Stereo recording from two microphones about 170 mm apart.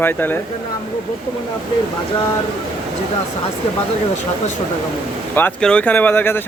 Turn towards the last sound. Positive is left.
turn(degrees=10)  # may be behind; listen again after turning